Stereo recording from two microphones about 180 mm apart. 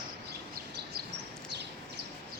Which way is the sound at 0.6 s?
55° right (ahead or behind).